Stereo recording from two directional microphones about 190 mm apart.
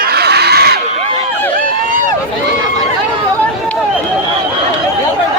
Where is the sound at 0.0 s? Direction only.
60° right (ahead or behind).